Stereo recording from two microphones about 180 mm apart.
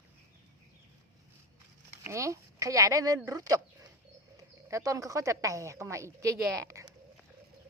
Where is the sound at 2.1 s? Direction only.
15° right (ahead or behind).